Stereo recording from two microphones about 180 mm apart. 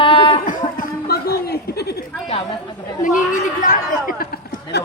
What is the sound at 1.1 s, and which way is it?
Chuckle, 60° left (ahead or behind).